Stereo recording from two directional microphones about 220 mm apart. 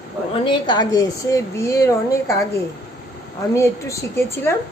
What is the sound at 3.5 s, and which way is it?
A woman's voice, 15° left (ahead or behind).